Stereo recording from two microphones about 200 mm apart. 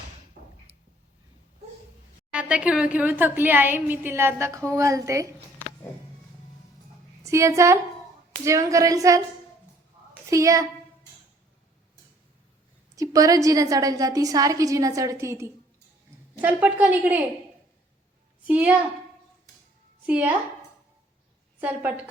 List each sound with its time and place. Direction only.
2.3 s a woman's voice: 5° right (ahead or behind)
7.3 s a woman's voice: 15° right (ahead or behind)
10.2 s a woman's voice: 15° right (ahead or behind)
13.0 s a woman's voice: 15° right (ahead or behind)
18.4 s a woman's voice: 10° right (ahead or behind)
20.1 s a woman's voice: 10° right (ahead or behind)
21.6 s a woman's voice: 10° right (ahead or behind)